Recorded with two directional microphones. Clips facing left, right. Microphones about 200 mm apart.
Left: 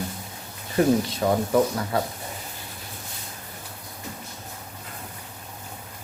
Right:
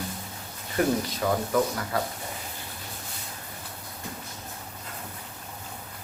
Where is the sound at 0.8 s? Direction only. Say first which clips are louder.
Left 5 dB; 30° left (ahead or behind).